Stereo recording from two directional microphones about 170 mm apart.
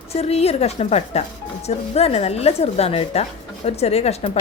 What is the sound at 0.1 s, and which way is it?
A woman's voice, 35° left (ahead or behind).